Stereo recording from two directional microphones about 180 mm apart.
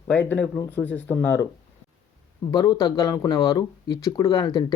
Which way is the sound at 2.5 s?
20° left (ahead or behind).